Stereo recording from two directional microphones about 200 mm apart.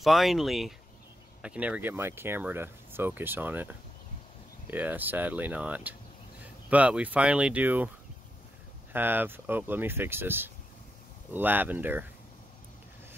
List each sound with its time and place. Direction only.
0.0 s speech: centre (ahead or behind)
8.9 s speech: 10° right (ahead or behind)